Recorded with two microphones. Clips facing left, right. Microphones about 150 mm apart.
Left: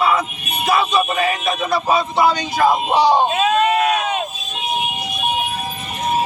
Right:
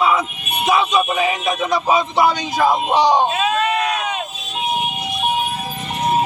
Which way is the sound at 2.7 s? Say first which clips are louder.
Even; 10° left (ahead or behind).